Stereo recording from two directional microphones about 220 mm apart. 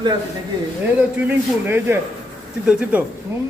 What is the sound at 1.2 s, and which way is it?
A man's voice, 10° right (ahead or behind).